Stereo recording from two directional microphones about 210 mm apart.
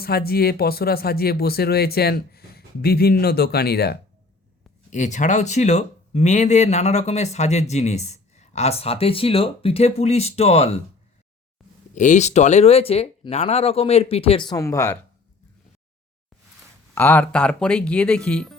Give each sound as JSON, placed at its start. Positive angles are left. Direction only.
{"t": 0.0, "sound": "speech", "side_deg": 45}
{"t": 4.9, "sound": "speech", "side_deg": 35}
{"t": 11.9, "sound": "speech", "side_deg": 35}
{"t": 16.9, "sound": "speech", "side_deg": 10}